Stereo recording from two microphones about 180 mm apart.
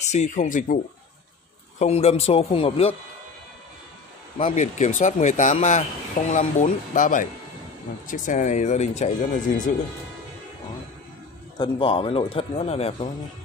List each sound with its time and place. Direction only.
0.0 s speech: 40° left (ahead or behind)
1.8 s a man's voice: 35° left (ahead or behind)
4.4 s a man's voice: 30° left (ahead or behind)
4.7 s a man's voice: 40° left (ahead or behind)
11.5 s a man's voice: 30° left (ahead or behind)